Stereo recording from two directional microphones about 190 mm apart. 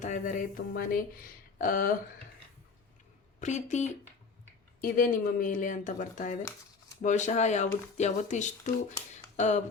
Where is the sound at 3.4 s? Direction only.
40° left (ahead or behind).